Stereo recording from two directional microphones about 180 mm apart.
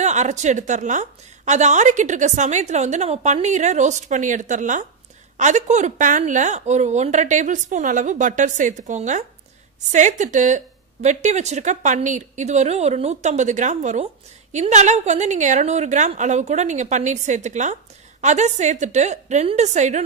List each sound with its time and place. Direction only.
0.0 s a woman's voice: 40° right (ahead or behind)